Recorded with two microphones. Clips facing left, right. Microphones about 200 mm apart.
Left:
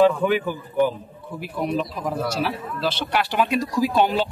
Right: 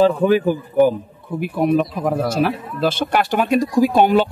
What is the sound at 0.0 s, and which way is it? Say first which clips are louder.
Speech: right 4 dB; 40° right (ahead or behind).